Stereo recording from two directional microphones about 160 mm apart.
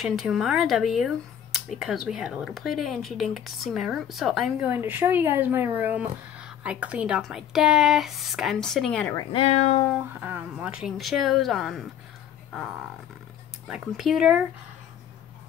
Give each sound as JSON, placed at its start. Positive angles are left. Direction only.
{"t": 0.0, "sound": "speech", "side_deg": 0}
{"t": 9.3, "sound": "speech", "side_deg": 40}
{"t": 10.2, "sound": "speech", "side_deg": -10}
{"t": 13.7, "sound": "speech", "side_deg": 0}